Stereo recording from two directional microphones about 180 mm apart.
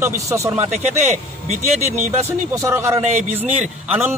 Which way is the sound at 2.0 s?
15° right (ahead or behind).